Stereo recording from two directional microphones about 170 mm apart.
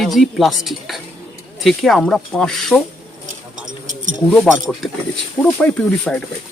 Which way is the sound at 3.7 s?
50° right (ahead or behind).